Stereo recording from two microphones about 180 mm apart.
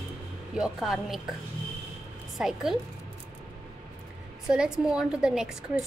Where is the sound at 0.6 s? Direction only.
Centre (ahead or behind).